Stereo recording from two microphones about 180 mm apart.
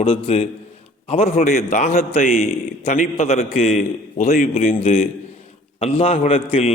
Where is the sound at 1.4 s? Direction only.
55° left (ahead or behind).